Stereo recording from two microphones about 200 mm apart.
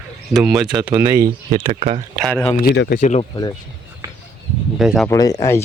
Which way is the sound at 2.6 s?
55° left (ahead or behind).